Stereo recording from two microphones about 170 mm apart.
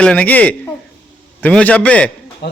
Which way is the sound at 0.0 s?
10° left (ahead or behind).